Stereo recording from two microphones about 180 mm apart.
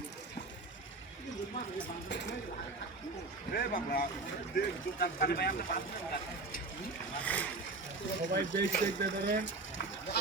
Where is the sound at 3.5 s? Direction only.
50° left (ahead or behind).